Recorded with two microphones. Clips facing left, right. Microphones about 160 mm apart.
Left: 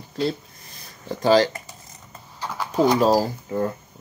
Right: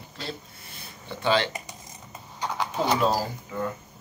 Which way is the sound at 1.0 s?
40° left (ahead or behind).